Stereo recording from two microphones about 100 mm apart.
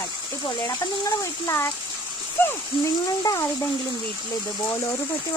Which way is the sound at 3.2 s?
40° left (ahead or behind).